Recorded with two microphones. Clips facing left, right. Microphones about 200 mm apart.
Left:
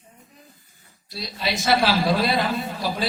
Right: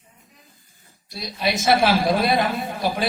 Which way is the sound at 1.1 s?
20° right (ahead or behind).